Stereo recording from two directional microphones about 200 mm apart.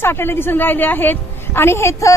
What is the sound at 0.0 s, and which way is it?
A woman's voice, 10° left (ahead or behind).